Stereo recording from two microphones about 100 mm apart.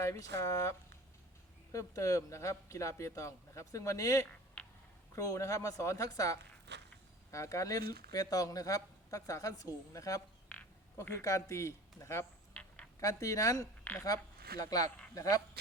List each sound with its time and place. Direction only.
0.0 s speech: 30° left (ahead or behind)
4.6 s a sound: 15° left (ahead or behind)
5.1 s speech: 30° left (ahead or behind)
11.2 s speech: 30° left (ahead or behind)
12.6 s a sound: 10° left (ahead or behind)
13.0 s speech: 35° left (ahead or behind)
13.9 s speech: 15° left (ahead or behind)
14.6 s speech: 40° left (ahead or behind)